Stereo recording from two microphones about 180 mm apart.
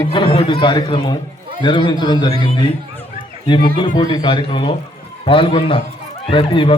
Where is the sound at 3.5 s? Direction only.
25° left (ahead or behind).